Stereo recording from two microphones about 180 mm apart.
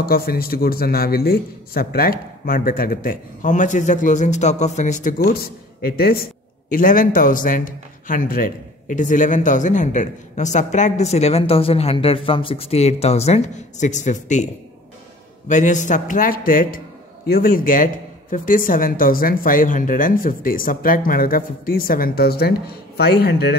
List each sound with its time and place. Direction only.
0.1 s a man's voice: 55° left (ahead or behind)